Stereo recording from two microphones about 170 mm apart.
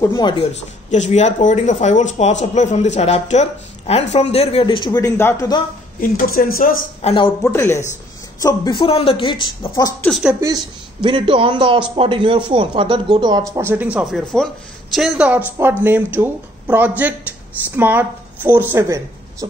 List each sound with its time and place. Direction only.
0.1 s speech: 30° left (ahead or behind)
5.9 s speech: 55° left (ahead or behind)
7.0 s a woman's voice: 35° left (ahead or behind)
7.5 s a woman's voice: 15° left (ahead or behind)
10.0 s speech: centre (ahead or behind)
10.4 s a man's voice: 25° right (ahead or behind)